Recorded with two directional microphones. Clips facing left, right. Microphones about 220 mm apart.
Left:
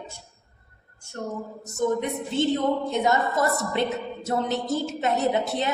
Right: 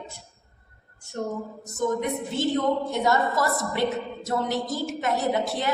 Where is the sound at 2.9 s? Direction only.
20° left (ahead or behind).